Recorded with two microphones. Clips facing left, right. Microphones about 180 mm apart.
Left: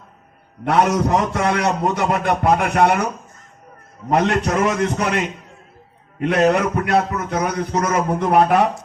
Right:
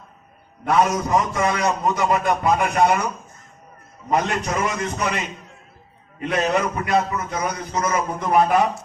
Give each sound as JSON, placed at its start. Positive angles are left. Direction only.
{"t": 0.6, "sound": "a man's voice", "side_deg": 65}
{"t": 4.1, "sound": "a man's voice", "side_deg": 70}